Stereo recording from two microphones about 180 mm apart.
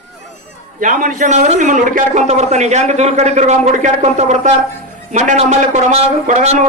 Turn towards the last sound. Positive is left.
turn(degrees=-40)  # may be behind; listen again after turning